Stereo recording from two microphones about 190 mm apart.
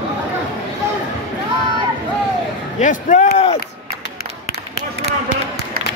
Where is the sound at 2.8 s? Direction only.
40° left (ahead or behind).